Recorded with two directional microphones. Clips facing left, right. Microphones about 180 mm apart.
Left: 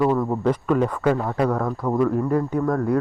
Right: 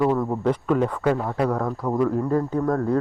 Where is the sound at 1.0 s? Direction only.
10° right (ahead or behind).